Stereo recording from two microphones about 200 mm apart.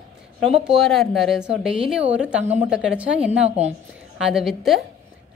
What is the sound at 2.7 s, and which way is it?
A woman's voice, 5° right (ahead or behind).